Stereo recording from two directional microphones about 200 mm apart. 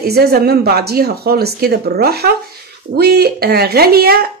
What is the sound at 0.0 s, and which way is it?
Speech, 50° right (ahead or behind).